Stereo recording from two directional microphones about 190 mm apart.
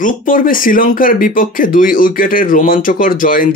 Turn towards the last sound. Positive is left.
turn(degrees=45)  # may be behind; listen again after turning